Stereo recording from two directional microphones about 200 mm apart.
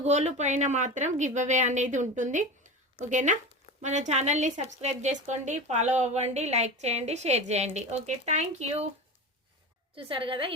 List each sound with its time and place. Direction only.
0.0 s a woman's voice: 35° right (ahead or behind)
9.9 s a woman's voice: 25° right (ahead or behind)